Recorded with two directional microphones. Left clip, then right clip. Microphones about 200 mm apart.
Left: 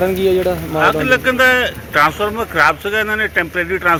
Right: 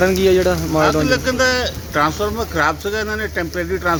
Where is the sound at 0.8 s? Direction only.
15° left (ahead or behind).